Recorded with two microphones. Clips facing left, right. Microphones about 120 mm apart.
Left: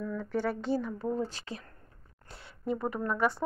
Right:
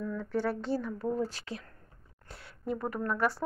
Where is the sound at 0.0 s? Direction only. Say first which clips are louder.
Even; 5° left (ahead or behind).